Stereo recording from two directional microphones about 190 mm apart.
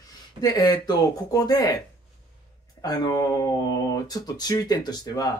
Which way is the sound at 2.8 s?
20° left (ahead or behind).